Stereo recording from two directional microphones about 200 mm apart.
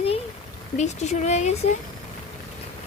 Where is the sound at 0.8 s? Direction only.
35° left (ahead or behind).